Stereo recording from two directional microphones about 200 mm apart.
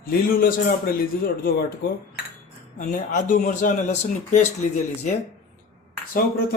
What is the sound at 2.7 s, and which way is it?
Speech, 40° left (ahead or behind).